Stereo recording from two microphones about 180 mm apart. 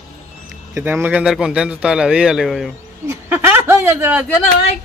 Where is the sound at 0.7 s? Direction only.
10° right (ahead or behind).